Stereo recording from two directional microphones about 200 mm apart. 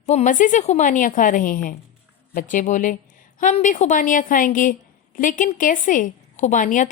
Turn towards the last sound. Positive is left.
turn(degrees=40)  # may be behind; listen again after turning